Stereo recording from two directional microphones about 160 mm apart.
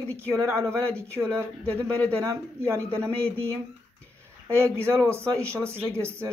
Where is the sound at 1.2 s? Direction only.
15° right (ahead or behind).